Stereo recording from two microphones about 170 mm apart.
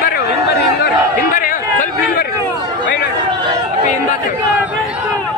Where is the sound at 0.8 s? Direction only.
55° left (ahead or behind).